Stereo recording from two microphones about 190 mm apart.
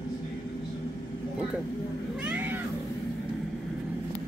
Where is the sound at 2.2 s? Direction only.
10° right (ahead or behind).